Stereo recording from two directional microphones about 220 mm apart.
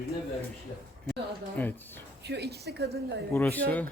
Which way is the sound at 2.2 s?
50° right (ahead or behind).